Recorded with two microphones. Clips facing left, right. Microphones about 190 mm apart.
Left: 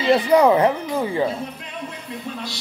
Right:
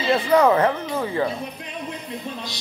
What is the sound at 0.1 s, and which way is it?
Speech, 15° left (ahead or behind).